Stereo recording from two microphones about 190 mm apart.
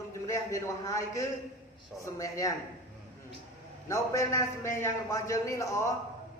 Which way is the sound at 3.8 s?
15° left (ahead or behind).